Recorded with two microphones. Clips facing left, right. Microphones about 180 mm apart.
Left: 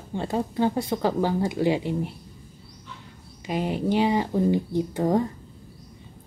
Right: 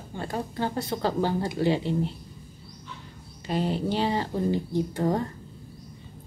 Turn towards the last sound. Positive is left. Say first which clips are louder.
# left 3 dB
turn(degrees=20)  # may be behind; listen again after turning